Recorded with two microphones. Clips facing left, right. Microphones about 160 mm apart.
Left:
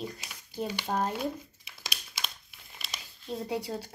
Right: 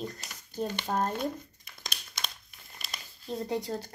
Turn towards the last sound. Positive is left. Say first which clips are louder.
# right 1 dB
turn(degrees=10)  # may be behind; listen again after turning